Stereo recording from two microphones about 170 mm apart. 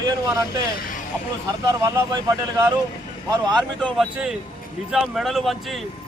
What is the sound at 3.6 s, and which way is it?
Speech, 5° left (ahead or behind).